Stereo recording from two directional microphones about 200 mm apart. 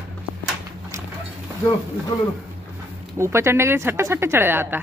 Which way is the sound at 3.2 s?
15° right (ahead or behind).